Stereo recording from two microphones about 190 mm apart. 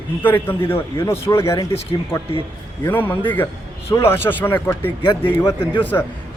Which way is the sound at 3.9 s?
10° left (ahead or behind).